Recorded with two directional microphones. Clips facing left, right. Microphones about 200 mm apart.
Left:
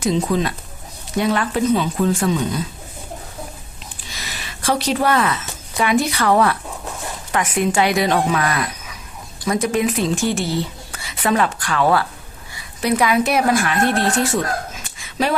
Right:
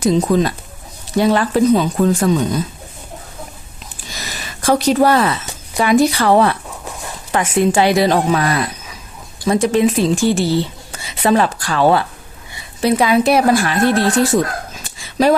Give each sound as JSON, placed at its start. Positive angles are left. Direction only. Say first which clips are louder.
{"t": 0.0, "sound": "a woman's voice", "louder": "right 5 dB", "side_deg": -40}
{"t": 4.2, "sound": "a woman's voice", "louder": "right 3 dB", "side_deg": -45}